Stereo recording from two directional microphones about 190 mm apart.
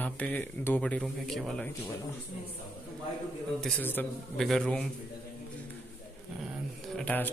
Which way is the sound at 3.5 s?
5° left (ahead or behind).